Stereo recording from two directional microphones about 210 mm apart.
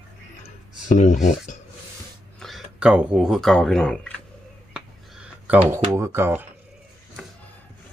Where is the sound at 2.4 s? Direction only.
Centre (ahead or behind).